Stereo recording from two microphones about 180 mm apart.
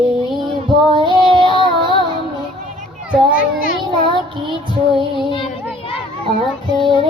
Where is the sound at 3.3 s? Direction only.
50° left (ahead or behind).